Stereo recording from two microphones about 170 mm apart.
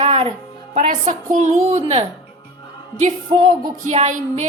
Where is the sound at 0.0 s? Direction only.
40° right (ahead or behind).